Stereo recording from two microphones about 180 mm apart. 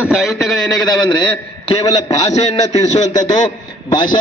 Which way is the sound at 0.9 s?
25° left (ahead or behind).